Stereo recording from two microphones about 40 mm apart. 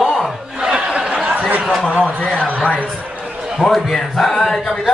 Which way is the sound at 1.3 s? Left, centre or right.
Right.